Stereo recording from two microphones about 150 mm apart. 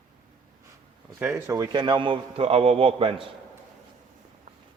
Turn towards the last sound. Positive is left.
turn(degrees=-35)  # may be behind; listen again after turning